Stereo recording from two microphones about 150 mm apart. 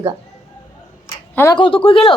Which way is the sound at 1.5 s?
35° left (ahead or behind).